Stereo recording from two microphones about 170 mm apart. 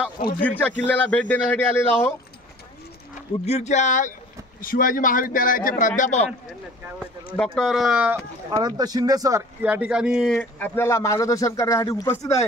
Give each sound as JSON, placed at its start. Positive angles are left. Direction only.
{"t": 0.4, "sound": "speech", "side_deg": 10}
{"t": 3.4, "sound": "a man's voice", "side_deg": 40}
{"t": 7.3, "sound": "speech", "side_deg": 0}
{"t": 8.5, "sound": "speech", "side_deg": -20}
{"t": 9.6, "sound": "speech", "side_deg": -10}
{"t": 10.3, "sound": "speech", "side_deg": 15}